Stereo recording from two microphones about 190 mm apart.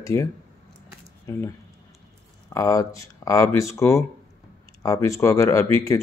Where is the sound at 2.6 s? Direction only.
15° left (ahead or behind).